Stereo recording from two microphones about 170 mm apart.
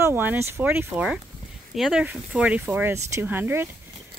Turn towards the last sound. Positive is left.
turn(degrees=-10)  # may be behind; listen again after turning